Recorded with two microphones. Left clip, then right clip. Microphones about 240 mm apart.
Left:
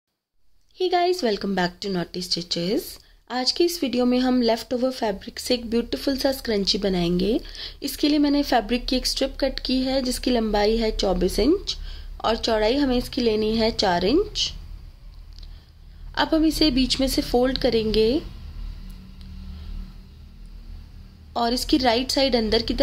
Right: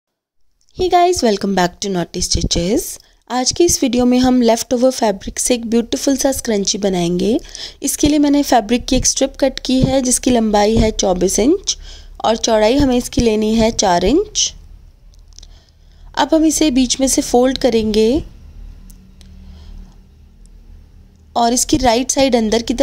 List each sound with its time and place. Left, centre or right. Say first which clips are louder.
0.7 s a woman's voice: right 9 dB; right
16.1 s a woman's voice: right 8 dB; right
21.3 s a woman's voice: right 8 dB; right